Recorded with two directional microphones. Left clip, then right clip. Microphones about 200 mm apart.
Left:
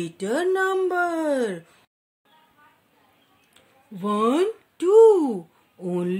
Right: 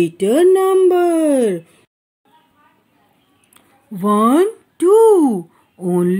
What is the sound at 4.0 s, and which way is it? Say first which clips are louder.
A woman's voice: right 8 dB; 25° right (ahead or behind).